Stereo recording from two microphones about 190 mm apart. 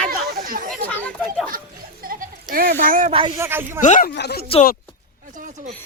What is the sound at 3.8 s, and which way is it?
Speech, 40° left (ahead or behind).